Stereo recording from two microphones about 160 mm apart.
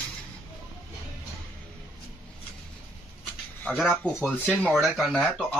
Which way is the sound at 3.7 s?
Centre (ahead or behind).